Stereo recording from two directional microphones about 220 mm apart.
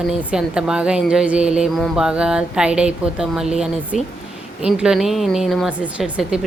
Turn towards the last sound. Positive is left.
turn(degrees=-5)  # may be behind; listen again after turning